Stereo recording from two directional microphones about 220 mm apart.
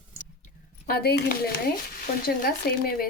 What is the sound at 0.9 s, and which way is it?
Speech, 45° left (ahead or behind).